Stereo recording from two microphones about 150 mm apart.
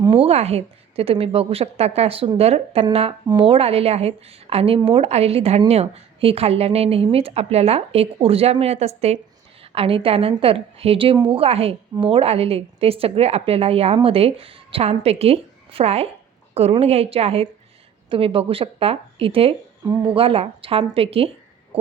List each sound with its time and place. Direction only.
0.2 s a woman's voice: 45° right (ahead or behind)
19.8 s speech: 15° right (ahead or behind)
20.1 s a woman's voice: 40° right (ahead or behind)